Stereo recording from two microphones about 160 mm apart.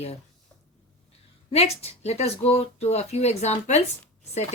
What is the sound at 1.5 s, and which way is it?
A woman's voice, 40° left (ahead or behind).